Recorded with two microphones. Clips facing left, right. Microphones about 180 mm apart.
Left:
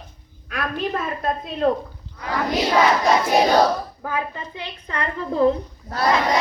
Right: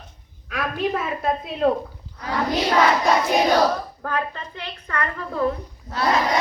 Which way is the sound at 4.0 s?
10° left (ahead or behind).